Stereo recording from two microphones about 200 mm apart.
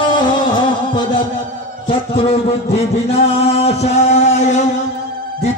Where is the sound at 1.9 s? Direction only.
30° left (ahead or behind).